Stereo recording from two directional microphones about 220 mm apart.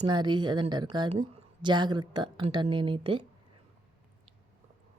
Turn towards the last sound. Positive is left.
turn(degrees=-25)  # may be behind; listen again after turning